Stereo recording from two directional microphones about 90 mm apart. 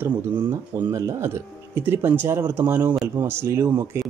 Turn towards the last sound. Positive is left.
turn(degrees=-30)  # may be behind; listen again after turning